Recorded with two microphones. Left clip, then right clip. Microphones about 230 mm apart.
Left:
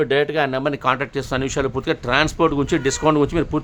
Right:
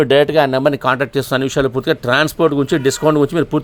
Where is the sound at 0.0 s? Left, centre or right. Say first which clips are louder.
Right 7 dB; right.